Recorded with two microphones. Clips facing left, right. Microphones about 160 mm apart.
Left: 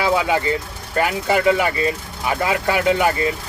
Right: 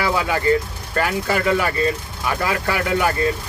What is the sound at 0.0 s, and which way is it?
Speech, 15° left (ahead or behind).